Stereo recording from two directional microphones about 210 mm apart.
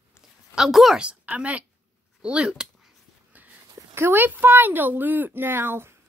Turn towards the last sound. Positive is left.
turn(degrees=-10)  # may be behind; listen again after turning